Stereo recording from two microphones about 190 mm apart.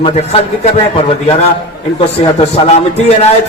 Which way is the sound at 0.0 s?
35° left (ahead or behind).